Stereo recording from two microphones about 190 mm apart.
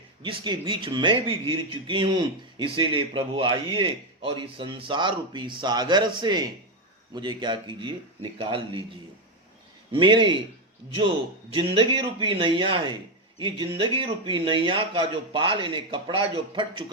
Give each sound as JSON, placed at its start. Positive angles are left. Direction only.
{"t": 0.2, "sound": "speech", "side_deg": -25}
{"t": 9.9, "sound": "speech", "side_deg": -25}
{"t": 11.5, "sound": "speech", "side_deg": -25}